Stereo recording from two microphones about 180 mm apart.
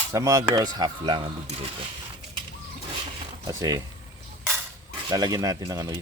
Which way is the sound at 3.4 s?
20° right (ahead or behind).